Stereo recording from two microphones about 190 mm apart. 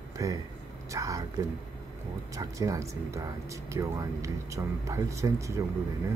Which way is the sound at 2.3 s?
15° right (ahead or behind).